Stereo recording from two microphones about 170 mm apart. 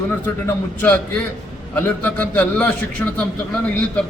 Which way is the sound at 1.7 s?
10° left (ahead or behind).